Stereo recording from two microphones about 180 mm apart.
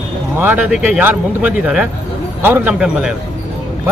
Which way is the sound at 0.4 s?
10° right (ahead or behind).